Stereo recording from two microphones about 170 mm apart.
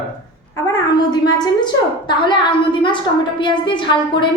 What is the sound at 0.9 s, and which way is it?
A woman's voice, 25° left (ahead or behind).